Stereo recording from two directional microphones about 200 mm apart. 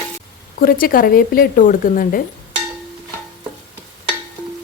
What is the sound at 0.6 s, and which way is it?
Speech, 45° left (ahead or behind).